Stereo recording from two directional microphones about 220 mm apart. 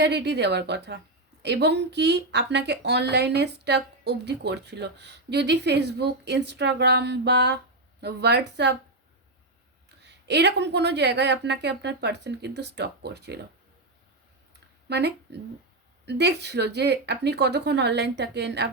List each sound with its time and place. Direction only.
0.0 s a woman's voice: 50° right (ahead or behind)
10.0 s a woman's voice: 50° right (ahead or behind)
14.8 s a woman's voice: 50° right (ahead or behind)